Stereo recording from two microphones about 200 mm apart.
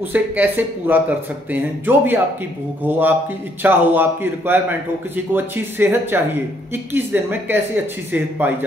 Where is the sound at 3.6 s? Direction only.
10° right (ahead or behind).